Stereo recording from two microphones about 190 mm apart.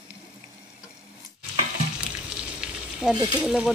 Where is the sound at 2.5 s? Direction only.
5° right (ahead or behind).